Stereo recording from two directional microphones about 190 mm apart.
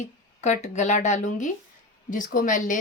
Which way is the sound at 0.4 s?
35° left (ahead or behind).